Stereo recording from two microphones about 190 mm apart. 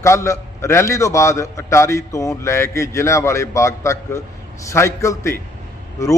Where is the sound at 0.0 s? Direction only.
15° left (ahead or behind).